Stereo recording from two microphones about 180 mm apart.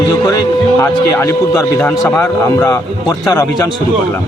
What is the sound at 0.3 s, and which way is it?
A man's voice, 20° left (ahead or behind).